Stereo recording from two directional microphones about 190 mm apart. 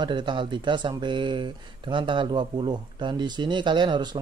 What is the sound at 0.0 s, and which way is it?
Speech, 25° right (ahead or behind).